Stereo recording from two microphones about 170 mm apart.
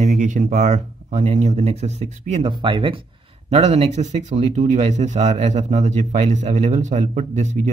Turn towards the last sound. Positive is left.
turn(degrees=-45)  # may be behind; listen again after turning